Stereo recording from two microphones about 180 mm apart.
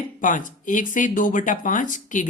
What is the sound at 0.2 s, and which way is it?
Speech, 45° left (ahead or behind).